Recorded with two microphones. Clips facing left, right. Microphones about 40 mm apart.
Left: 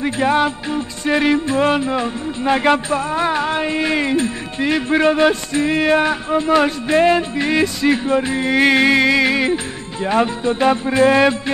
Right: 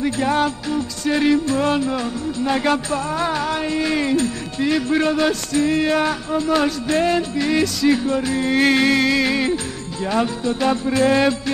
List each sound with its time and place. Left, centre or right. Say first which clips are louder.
0.0 s music: left 3 dB; left